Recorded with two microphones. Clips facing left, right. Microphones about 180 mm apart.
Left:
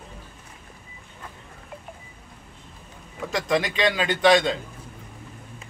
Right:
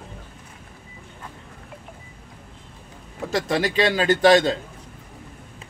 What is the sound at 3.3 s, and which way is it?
A man's voice, 30° right (ahead or behind).